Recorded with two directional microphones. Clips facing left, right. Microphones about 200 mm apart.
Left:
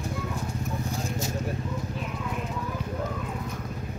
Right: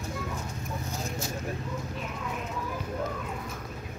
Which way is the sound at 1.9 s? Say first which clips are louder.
Left 3 dB; centre (ahead or behind).